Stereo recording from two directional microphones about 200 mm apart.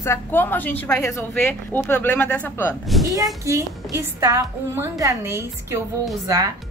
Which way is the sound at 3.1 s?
15° right (ahead or behind).